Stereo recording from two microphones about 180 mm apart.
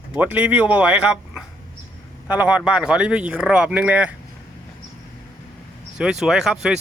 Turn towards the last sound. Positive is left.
turn(degrees=-5)  # may be behind; listen again after turning